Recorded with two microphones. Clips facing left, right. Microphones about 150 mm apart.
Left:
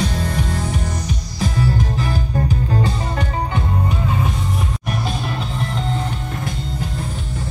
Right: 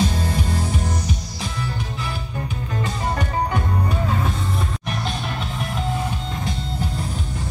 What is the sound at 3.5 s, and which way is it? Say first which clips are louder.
Music: left 1 dB; 15° left (ahead or behind).